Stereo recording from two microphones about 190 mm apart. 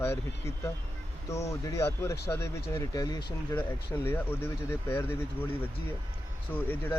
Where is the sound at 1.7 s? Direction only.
15° left (ahead or behind).